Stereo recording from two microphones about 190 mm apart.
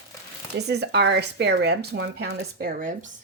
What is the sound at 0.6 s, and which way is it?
Speech, 60° right (ahead or behind).